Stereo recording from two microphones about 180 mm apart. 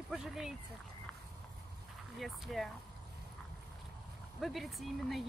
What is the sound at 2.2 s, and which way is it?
Speech, centre (ahead or behind).